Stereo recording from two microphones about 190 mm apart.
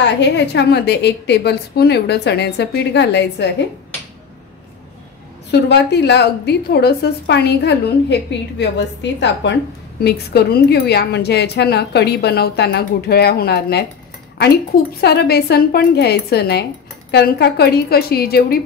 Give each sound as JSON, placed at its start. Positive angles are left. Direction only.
{"t": 0.0, "sound": "a woman's voice", "side_deg": 65}
{"t": 5.5, "sound": "a woman's voice", "side_deg": 60}
{"t": 15.0, "sound": "a woman's voice", "side_deg": 60}